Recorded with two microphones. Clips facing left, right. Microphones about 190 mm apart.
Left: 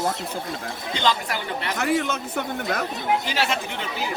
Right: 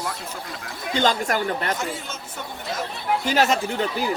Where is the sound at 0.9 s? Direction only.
45° right (ahead or behind).